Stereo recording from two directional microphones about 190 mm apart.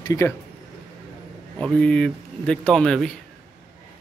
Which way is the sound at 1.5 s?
5° left (ahead or behind).